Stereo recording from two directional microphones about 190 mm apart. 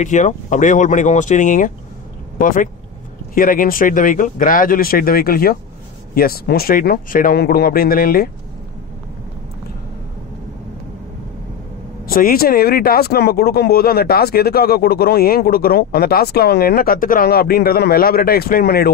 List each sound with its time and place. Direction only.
0.0 s speech: 40° left (ahead or behind)
12.1 s speech: 50° left (ahead or behind)